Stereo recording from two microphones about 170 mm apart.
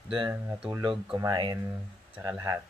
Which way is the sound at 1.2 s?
25° right (ahead or behind).